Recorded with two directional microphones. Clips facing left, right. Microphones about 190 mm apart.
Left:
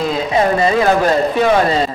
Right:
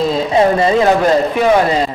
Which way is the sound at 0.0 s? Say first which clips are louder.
Right 3 dB; 25° right (ahead or behind).